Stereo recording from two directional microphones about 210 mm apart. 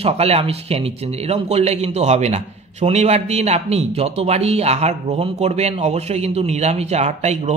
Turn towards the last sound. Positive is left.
turn(degrees=-30)  # may be behind; listen again after turning